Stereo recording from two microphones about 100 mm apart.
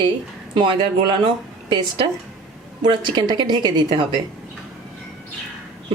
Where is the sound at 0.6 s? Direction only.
50° right (ahead or behind).